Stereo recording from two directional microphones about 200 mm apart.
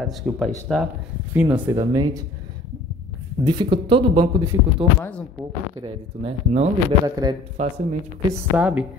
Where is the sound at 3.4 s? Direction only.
25° right (ahead or behind).